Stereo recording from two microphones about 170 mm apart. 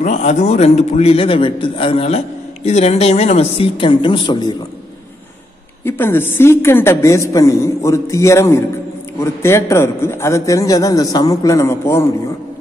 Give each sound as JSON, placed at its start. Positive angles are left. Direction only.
{"t": 0.0, "sound": "a man's voice", "side_deg": 45}
{"t": 5.9, "sound": "a man's voice", "side_deg": 15}